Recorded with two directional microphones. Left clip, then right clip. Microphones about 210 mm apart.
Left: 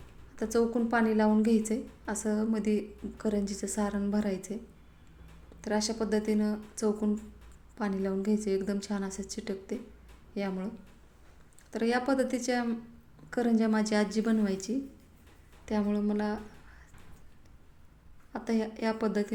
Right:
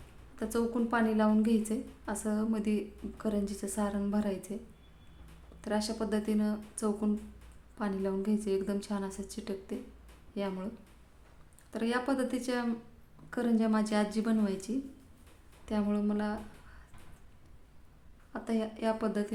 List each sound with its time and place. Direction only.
0.3 s a woman's voice: 5° left (ahead or behind)
11.7 s a woman's voice: 5° left (ahead or behind)
18.3 s a woman's voice: 10° left (ahead or behind)